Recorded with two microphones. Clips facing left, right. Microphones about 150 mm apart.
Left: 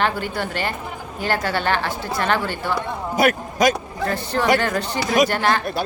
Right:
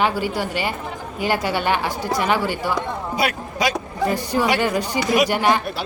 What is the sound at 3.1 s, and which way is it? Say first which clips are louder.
Speech: left 6 dB; 45° left (ahead or behind).